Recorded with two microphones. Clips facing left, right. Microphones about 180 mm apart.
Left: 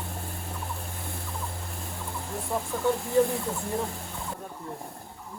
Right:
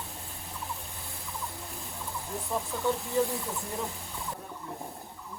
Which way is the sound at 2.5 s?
15° left (ahead or behind).